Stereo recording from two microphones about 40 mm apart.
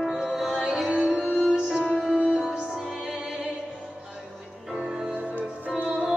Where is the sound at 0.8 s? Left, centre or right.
Right.